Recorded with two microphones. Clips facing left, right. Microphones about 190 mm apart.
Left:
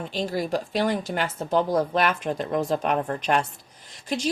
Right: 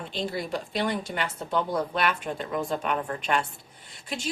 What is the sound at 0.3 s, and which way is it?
Speech, 45° left (ahead or behind).